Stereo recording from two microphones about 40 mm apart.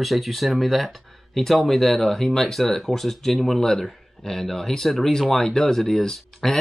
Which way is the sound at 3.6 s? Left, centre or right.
Centre.